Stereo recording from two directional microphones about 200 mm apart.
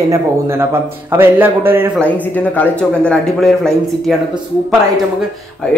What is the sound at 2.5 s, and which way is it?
Speech, 5° left (ahead or behind).